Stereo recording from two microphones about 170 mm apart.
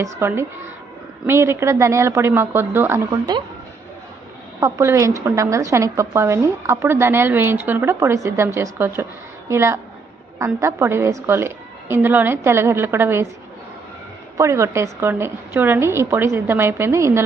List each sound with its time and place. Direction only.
0.0 s a woman's voice: 15° right (ahead or behind)
4.6 s a woman's voice: 20° right (ahead or behind)
14.3 s a woman's voice: 15° right (ahead or behind)